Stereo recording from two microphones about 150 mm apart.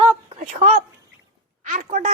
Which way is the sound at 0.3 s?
45° right (ahead or behind).